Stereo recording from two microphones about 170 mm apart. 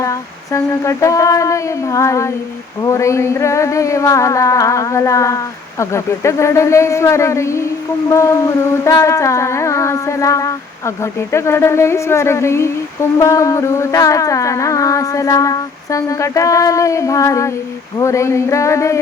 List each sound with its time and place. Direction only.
0.0 s humming: 15° left (ahead or behind)